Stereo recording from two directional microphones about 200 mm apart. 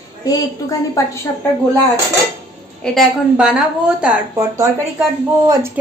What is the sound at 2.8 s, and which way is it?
A woman's voice, centre (ahead or behind).